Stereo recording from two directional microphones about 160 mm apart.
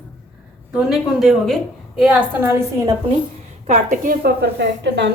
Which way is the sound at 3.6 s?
55° right (ahead or behind).